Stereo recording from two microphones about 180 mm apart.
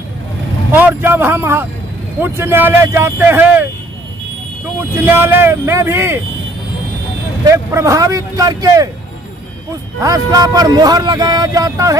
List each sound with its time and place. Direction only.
0.7 s speech: 10° right (ahead or behind)
4.9 s speech: 15° right (ahead or behind)
7.4 s speech: 15° right (ahead or behind)
9.9 s speech: 20° right (ahead or behind)